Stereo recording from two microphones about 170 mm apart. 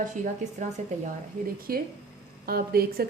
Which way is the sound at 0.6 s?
45° right (ahead or behind).